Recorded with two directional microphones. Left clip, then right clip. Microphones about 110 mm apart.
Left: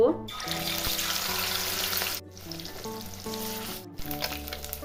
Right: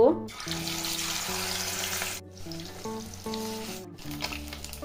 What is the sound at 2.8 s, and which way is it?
Frying, 5° left (ahead or behind).